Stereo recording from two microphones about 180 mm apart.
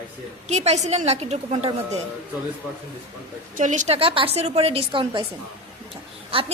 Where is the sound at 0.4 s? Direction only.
40° right (ahead or behind).